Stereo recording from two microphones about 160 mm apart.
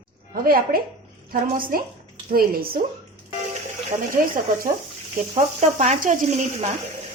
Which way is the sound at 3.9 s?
50° right (ahead or behind).